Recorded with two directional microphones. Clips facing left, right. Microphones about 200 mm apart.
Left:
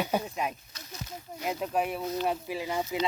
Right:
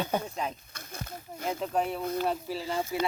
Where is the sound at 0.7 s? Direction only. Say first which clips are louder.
Right 1 dB; 55° right (ahead or behind).